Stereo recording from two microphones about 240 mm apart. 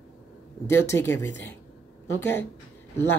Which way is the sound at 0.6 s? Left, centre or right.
Centre.